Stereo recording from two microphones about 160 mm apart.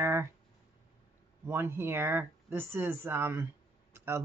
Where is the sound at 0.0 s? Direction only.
15° right (ahead or behind).